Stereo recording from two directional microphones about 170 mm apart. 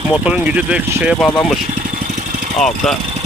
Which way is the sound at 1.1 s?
5° left (ahead or behind).